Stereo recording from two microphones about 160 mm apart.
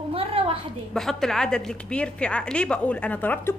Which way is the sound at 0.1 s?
35° right (ahead or behind).